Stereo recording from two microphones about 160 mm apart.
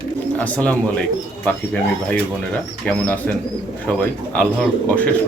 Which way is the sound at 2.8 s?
10° left (ahead or behind).